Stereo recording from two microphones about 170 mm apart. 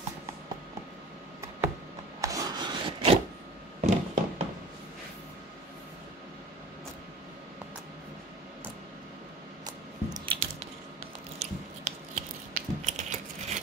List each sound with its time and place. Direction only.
2.2 s rub: 20° right (ahead or behind)
3.8 s fireworks: 50° right (ahead or behind)
10.1 s biting: 30° right (ahead or behind)
11.3 s biting: 40° right (ahead or behind)